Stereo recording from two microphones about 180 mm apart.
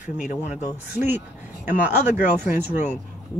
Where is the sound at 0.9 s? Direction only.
10° right (ahead or behind).